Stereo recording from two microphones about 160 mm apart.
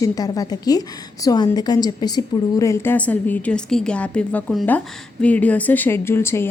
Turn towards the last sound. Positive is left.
turn(degrees=15)  # may be behind; listen again after turning